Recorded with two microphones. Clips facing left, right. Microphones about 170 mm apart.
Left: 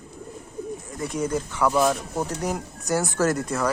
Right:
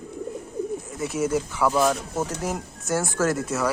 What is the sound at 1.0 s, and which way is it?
Speech, 5° right (ahead or behind).